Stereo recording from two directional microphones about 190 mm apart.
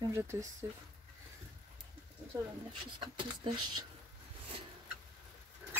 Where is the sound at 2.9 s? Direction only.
25° right (ahead or behind).